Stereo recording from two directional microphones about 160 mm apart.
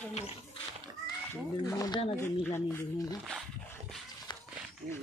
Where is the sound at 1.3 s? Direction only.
20° left (ahead or behind).